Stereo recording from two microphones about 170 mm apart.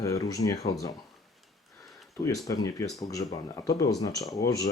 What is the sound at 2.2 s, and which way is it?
Speech, 20° left (ahead or behind).